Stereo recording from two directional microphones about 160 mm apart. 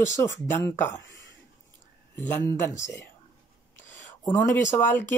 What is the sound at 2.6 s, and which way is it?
Speech, 15° left (ahead or behind).